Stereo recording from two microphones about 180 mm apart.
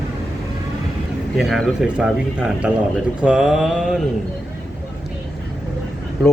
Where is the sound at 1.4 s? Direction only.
Centre (ahead or behind).